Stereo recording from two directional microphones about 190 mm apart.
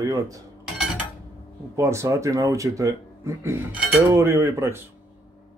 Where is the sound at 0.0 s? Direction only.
15° right (ahead or behind).